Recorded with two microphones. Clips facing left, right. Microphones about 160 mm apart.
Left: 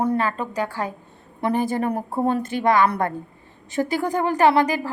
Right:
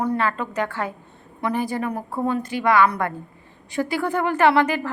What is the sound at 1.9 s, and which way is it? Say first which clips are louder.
Speech: left 3 dB; 25° left (ahead or behind).